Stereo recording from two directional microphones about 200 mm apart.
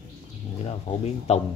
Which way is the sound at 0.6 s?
30° left (ahead or behind).